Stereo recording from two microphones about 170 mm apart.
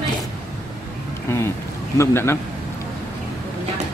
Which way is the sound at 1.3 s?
15° left (ahead or behind).